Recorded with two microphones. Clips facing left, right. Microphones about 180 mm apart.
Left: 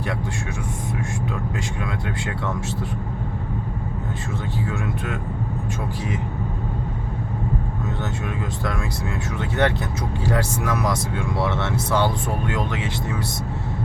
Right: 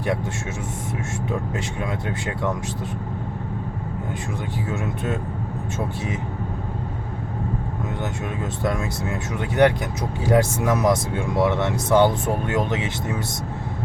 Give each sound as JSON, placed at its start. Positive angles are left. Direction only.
{"t": 8.6, "sound": "speech", "side_deg": -15}